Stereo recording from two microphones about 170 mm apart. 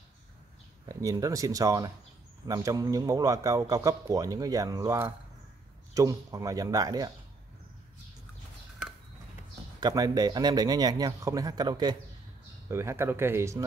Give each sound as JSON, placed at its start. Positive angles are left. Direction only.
{"t": 0.8, "sound": "a man's voice", "side_deg": -20}
{"t": 9.8, "sound": "a man's voice", "side_deg": -20}